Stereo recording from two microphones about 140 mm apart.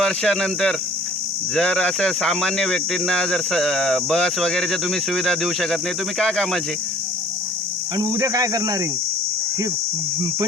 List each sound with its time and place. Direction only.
0.0 s speech: 5° left (ahead or behind)
7.9 s speech: 25° right (ahead or behind)